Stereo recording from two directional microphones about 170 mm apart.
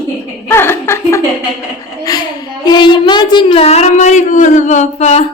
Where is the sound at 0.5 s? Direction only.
15° left (ahead or behind); by 5.3 s 40° left (ahead or behind).